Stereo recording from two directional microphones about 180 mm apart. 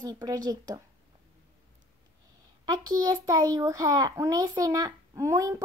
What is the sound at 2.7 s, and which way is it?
A child's voice, 20° right (ahead or behind).